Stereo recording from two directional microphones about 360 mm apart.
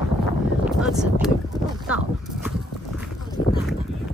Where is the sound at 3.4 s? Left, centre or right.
Left.